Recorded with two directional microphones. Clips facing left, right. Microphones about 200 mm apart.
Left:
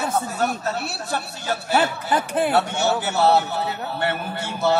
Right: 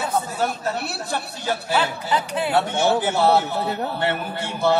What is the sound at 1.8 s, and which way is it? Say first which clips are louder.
Speech: left 1 dB; 50° left (ahead or behind).